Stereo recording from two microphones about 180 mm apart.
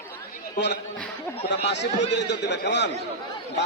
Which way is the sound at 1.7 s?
75° left (ahead or behind).